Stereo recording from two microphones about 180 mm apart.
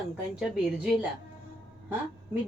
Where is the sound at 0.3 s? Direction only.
5° right (ahead or behind).